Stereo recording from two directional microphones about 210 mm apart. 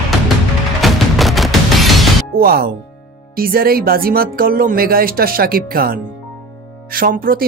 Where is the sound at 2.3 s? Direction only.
45° right (ahead or behind).